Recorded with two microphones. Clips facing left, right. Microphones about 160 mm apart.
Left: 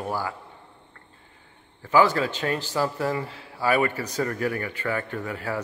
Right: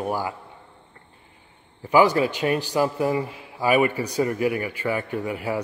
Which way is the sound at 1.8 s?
15° right (ahead or behind).